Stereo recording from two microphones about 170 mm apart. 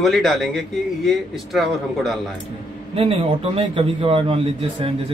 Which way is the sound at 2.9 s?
35° right (ahead or behind).